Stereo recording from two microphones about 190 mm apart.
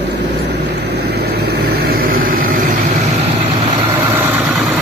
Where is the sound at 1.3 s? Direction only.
55° right (ahead or behind).